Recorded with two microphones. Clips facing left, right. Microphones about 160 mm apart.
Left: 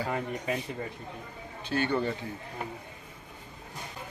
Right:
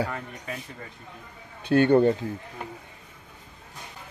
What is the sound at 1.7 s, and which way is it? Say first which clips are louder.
Speech: right 10 dB; 55° right (ahead or behind).